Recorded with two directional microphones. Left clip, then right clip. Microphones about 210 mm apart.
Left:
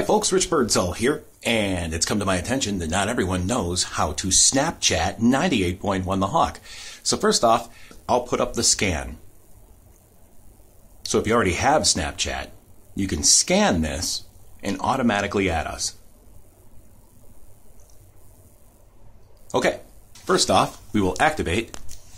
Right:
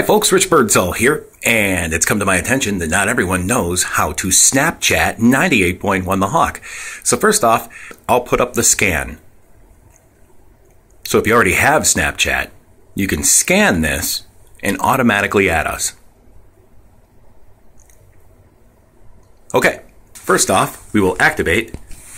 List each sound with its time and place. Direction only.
0.0 s speech: 15° right (ahead or behind)
11.1 s speech: 10° right (ahead or behind)
13.5 s speech: 5° right (ahead or behind)
20.2 s speech: centre (ahead or behind)